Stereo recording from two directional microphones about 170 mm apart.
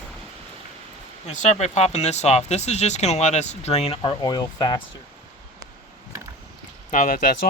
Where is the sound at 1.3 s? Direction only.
45° left (ahead or behind); by 4.8 s 25° left (ahead or behind).